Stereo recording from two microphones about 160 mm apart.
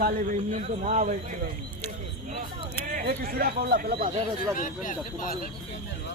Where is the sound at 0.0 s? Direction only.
55° right (ahead or behind).